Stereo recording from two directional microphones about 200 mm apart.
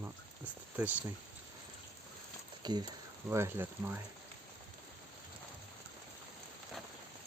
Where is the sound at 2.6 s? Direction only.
20° right (ahead or behind).